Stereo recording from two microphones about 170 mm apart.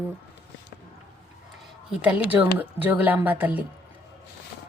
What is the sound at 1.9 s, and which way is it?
Speech, 5° right (ahead or behind).